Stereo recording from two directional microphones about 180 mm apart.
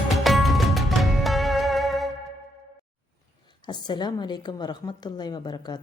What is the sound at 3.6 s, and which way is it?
A woman's voice, 25° left (ahead or behind).